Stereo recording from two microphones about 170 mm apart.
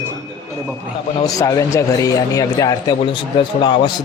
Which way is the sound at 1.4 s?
20° left (ahead or behind).